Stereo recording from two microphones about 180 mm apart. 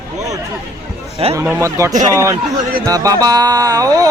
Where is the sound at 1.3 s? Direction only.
15° right (ahead or behind).